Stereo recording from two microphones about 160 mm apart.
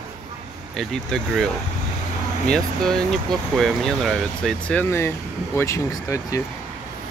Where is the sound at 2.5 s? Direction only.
5° left (ahead or behind).